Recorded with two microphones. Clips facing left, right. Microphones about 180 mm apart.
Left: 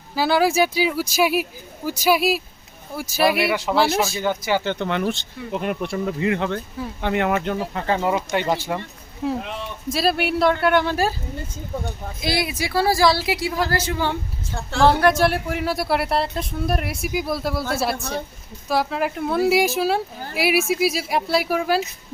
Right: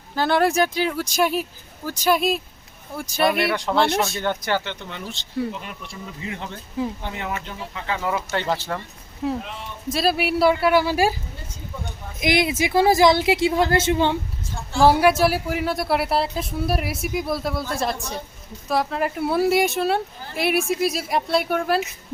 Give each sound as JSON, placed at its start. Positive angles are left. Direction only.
{"t": 0.2, "sound": "speech", "side_deg": 5}
{"t": 4.8, "sound": "speech", "side_deg": 70}
{"t": 7.9, "sound": "speech", "side_deg": 20}
{"t": 9.2, "sound": "speech", "side_deg": 0}
{"t": 12.2, "sound": "a woman's voice", "side_deg": -20}
{"t": 14.8, "sound": "speech", "side_deg": -10}
{"t": 18.7, "sound": "speech", "side_deg": 0}